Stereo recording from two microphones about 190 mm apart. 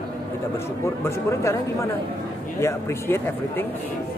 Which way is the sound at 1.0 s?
15° left (ahead or behind).